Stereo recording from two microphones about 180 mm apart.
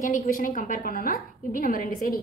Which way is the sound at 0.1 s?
45° left (ahead or behind).